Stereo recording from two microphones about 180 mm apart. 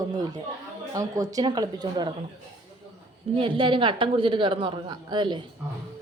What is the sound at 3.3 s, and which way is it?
A man's voice, 30° right (ahead or behind).